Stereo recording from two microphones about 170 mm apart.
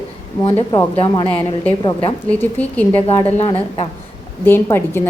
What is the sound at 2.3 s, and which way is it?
Speech, 10° left (ahead or behind).